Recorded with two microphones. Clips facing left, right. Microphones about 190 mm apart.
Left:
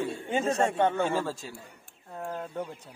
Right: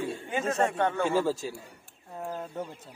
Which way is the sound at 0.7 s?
20° left (ahead or behind).